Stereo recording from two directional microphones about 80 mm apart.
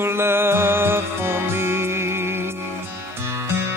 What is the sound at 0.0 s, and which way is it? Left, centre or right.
Music, right.